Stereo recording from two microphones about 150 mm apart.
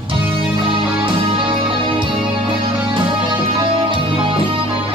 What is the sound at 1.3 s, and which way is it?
Music, 35° right (ahead or behind).